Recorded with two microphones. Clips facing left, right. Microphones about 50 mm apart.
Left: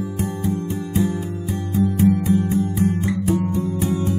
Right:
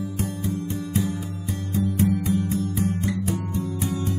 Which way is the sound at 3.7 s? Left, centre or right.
Left.